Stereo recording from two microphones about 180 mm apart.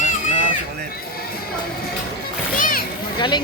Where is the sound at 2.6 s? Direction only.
55° left (ahead or behind).